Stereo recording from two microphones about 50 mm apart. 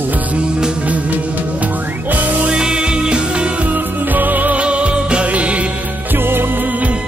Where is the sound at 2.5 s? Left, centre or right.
Centre.